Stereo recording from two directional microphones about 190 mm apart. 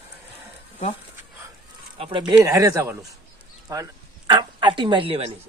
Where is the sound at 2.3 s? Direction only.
15° right (ahead or behind); by 5.3 s 30° right (ahead or behind).